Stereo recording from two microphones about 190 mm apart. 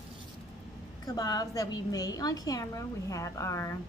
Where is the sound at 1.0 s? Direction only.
20° left (ahead or behind).